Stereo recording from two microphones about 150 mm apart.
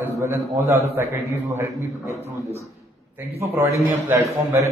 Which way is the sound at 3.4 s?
15° right (ahead or behind).